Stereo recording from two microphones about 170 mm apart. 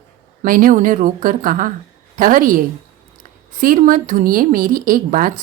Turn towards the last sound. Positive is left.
turn(degrees=-55)  # may be behind; listen again after turning